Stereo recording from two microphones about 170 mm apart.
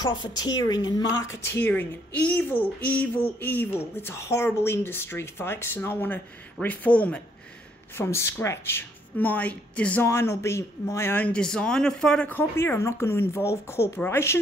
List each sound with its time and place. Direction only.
0.0 s a woman's voice: 25° left (ahead or behind)